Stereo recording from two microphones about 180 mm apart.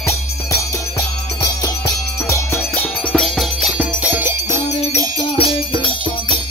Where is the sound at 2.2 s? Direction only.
10° left (ahead or behind); by 5.0 s 10° right (ahead or behind).